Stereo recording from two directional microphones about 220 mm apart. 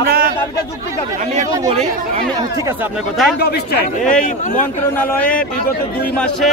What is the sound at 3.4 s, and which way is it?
Speech, 45° left (ahead or behind).